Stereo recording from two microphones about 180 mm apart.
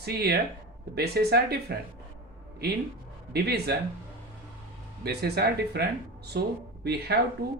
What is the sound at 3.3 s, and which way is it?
Speech, 65° right (ahead or behind).